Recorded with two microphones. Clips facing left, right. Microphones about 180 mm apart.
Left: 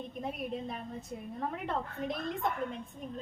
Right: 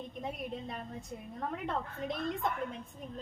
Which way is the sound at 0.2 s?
Centre (ahead or behind).